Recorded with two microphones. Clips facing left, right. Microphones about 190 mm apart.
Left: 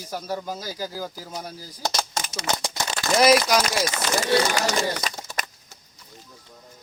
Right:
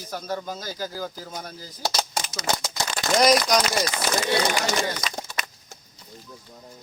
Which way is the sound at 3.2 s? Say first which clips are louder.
Left 2 dB; 5° left (ahead or behind).